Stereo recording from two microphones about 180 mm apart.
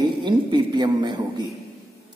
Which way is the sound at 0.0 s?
25° right (ahead or behind).